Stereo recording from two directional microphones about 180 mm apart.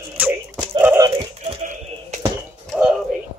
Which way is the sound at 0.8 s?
15° right (ahead or behind).